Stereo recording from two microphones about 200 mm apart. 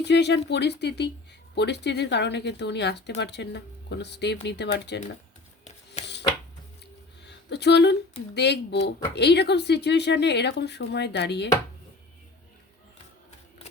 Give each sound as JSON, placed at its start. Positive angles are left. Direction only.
{"t": 0.0, "sound": "speech", "side_deg": 60}
{"t": 5.6, "sound": "a sound", "side_deg": 35}
{"t": 7.3, "sound": "speech", "side_deg": 60}